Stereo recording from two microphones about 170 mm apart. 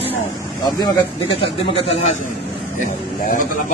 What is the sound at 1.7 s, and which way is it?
Speech, 35° left (ahead or behind).